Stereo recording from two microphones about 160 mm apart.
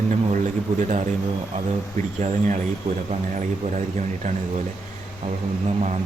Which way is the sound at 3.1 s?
45° right (ahead or behind).